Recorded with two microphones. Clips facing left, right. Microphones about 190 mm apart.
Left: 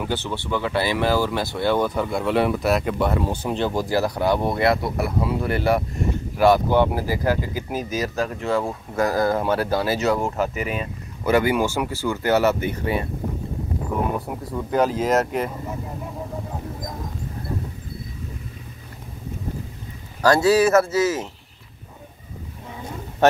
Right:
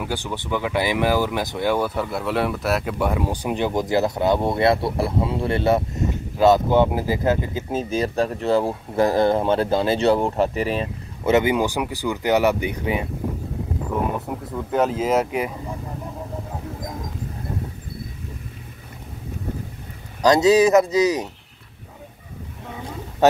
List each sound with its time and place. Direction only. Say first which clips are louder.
0.0 s speech: left 1 dB; 15° right (ahead or behind)
14.5 s speech: left 1 dB; centre (ahead or behind)
20.2 s speech: right 2 dB; 20° right (ahead or behind)